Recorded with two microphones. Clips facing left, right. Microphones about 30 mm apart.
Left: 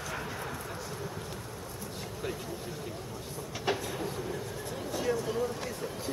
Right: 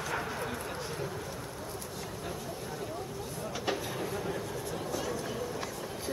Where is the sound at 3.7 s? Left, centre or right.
Centre.